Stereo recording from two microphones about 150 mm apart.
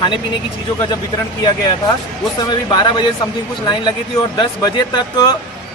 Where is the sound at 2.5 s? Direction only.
30° left (ahead or behind).